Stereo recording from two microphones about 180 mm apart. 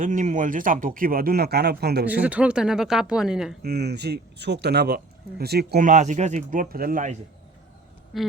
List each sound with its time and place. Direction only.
0.0 s speech: 45° right (ahead or behind); by 2.0 s 65° right (ahead or behind)
2.2 s speech: 5° right (ahead or behind)
3.6 s speech: 60° right (ahead or behind)
8.1 s speech: centre (ahead or behind)